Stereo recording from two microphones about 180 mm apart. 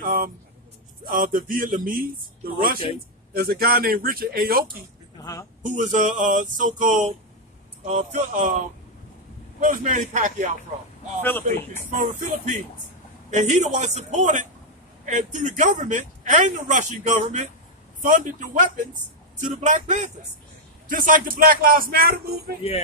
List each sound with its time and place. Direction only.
0.0 s a sound: 50° right (ahead or behind)
1.0 s a man's voice: 50° right (ahead or behind)
5.2 s speech: 15° left (ahead or behind)
5.6 s a man's voice: 45° right (ahead or behind)
12.0 s a man's voice: 45° right (ahead or behind)